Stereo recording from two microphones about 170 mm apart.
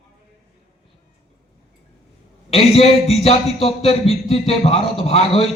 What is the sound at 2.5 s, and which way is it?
A man's voice, 35° left (ahead or behind).